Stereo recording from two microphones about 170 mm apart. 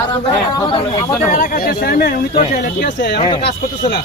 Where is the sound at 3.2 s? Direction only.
30° left (ahead or behind).